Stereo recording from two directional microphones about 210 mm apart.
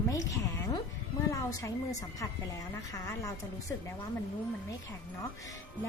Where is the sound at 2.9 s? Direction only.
15° left (ahead or behind).